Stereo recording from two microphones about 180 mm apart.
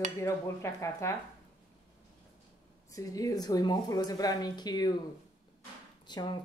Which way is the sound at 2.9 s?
20° left (ahead or behind).